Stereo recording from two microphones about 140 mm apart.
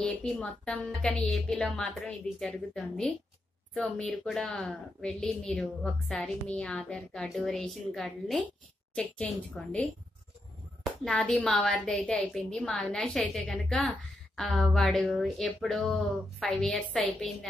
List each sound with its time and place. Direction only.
0.0 s a woman's voice: 10° left (ahead or behind)